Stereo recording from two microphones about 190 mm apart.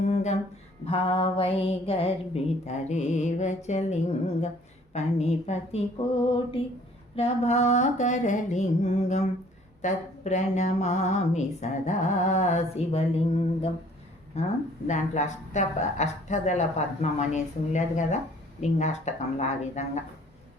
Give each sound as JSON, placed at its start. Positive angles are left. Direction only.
{"t": 0.1, "sound": "a sound", "side_deg": 35}
{"t": 0.9, "sound": "speech", "side_deg": 30}
{"t": 4.9, "sound": "speech", "side_deg": 35}